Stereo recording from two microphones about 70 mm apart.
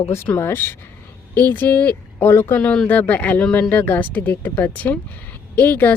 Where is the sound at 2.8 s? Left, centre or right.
Left.